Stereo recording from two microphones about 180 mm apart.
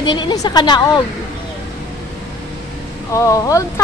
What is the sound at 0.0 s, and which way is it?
A woman's voice, 25° left (ahead or behind).